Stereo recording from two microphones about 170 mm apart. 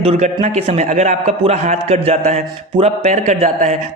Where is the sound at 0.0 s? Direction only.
40° right (ahead or behind).